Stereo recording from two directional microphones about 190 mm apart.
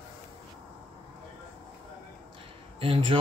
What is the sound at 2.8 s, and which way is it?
Speech, 30° right (ahead or behind).